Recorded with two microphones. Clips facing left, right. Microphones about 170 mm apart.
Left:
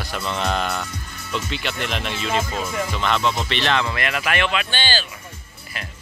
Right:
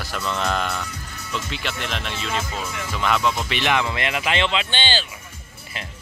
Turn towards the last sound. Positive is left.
turn(degrees=-25)  # may be behind; listen again after turning